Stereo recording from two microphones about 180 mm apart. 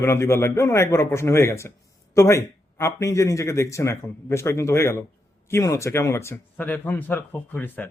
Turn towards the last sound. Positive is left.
turn(degrees=10)  # may be behind; listen again after turning